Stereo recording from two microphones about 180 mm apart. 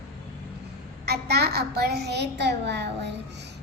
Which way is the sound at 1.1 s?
65° right (ahead or behind).